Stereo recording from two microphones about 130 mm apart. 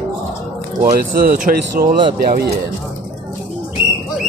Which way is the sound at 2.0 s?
40° right (ahead or behind).